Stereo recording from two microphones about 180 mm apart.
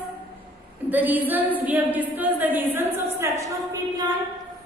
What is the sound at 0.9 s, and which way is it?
A woman's voice, 10° right (ahead or behind).